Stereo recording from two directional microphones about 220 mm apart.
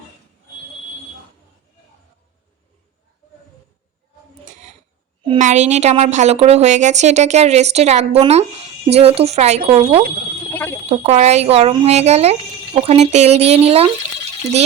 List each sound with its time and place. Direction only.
4.4 s a sound: 30° right (ahead or behind)
5.2 s a woman's voice: 30° right (ahead or behind)
10.5 s fire alarm: 10° left (ahead or behind)
10.8 s a woman's voice: 30° right (ahead or behind)